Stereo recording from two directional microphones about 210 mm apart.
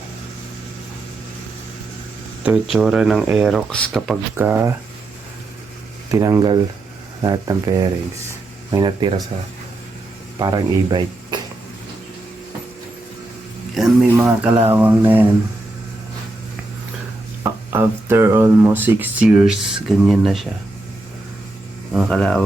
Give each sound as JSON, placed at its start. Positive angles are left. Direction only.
{"t": 2.4, "sound": "speech", "side_deg": -5}
{"t": 4.4, "sound": "speech", "side_deg": -10}
{"t": 6.1, "sound": "speech", "side_deg": -15}
{"t": 10.3, "sound": "speech", "side_deg": -15}
{"t": 13.7, "sound": "speech", "side_deg": -10}
{"t": 17.4, "sound": "speech", "side_deg": -10}
{"t": 21.9, "sound": "speech", "side_deg": 5}